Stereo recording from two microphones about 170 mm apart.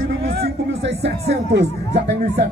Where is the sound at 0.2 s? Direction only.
65° right (ahead or behind).